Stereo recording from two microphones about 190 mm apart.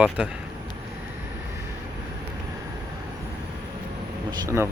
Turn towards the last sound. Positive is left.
turn(degrees=-15)  # may be behind; listen again after turning